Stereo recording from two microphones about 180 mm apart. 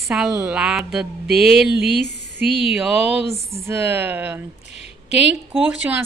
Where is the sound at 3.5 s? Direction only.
15° right (ahead or behind).